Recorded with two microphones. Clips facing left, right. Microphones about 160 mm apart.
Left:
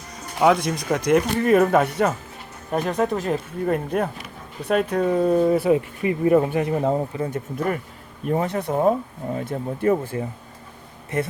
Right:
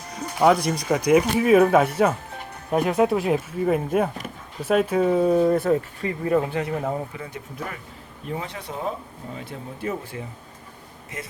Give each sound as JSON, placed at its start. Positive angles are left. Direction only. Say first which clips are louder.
{"t": 0.3, "sound": "speech", "louder": "even", "side_deg": 0}
{"t": 7.2, "sound": "speech", "louder": "left 8 dB", "side_deg": 50}
{"t": 11.1, "sound": "speech", "louder": "left 12 dB", "side_deg": 60}